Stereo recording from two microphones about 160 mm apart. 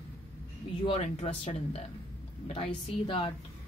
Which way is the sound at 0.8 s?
40° left (ahead or behind).